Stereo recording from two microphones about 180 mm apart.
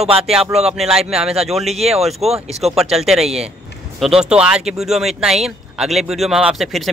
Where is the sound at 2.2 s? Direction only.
35° right (ahead or behind).